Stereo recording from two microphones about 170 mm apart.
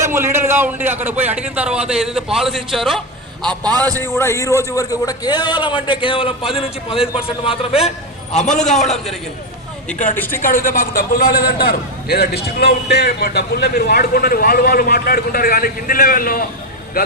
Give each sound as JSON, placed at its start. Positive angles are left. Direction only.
{"t": 0.0, "sound": "a man's voice", "side_deg": -15}
{"t": 3.4, "sound": "a man's voice", "side_deg": -25}
{"t": 3.9, "sound": "a man's voice", "side_deg": 15}
{"t": 8.8, "sound": "a man's voice", "side_deg": 0}
{"t": 10.2, "sound": "speech", "side_deg": 10}
{"t": 10.4, "sound": "a man's voice", "side_deg": 55}